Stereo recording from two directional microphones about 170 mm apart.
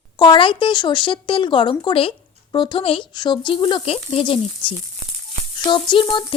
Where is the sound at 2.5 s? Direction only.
30° left (ahead or behind).